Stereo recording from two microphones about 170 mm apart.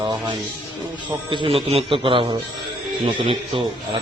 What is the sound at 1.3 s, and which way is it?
Speech, 30° right (ahead or behind).